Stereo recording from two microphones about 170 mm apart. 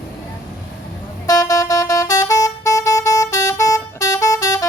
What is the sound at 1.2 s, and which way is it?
Vehicle, 20° left (ahead or behind).